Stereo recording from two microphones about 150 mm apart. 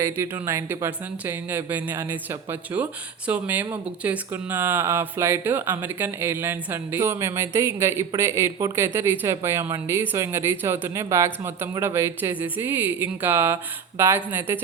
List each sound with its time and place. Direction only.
0.0 s speech: 20° right (ahead or behind)